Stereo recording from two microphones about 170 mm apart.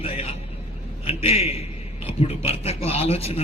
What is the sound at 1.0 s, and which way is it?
A man's voice, 35° left (ahead or behind).